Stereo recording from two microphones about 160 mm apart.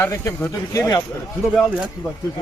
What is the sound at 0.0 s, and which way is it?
Speech, 20° left (ahead or behind).